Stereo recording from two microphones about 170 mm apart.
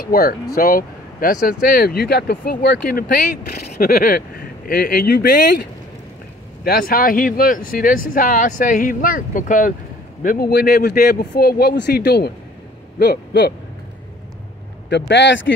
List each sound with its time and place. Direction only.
0.1 s speech: 60° left (ahead or behind)
13.0 s hoot: 75° left (ahead or behind)
14.9 s speech: 90° left